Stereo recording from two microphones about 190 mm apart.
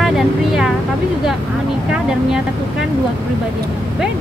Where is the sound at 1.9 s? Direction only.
5° right (ahead or behind).